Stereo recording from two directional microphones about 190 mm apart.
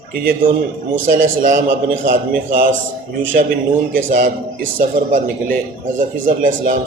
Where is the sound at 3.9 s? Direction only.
45° right (ahead or behind).